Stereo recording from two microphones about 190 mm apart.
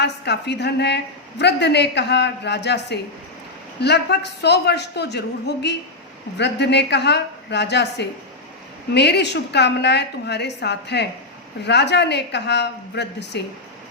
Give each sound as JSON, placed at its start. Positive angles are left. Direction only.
{"t": 0.0, "sound": "a woman's voice", "side_deg": 60}